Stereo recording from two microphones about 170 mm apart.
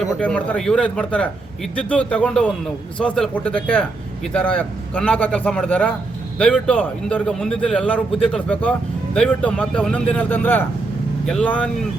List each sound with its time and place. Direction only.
0.0 s a man's voice: 5° left (ahead or behind)